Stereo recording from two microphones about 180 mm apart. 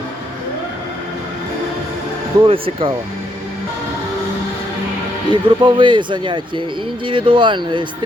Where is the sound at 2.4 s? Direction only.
30° right (ahead or behind).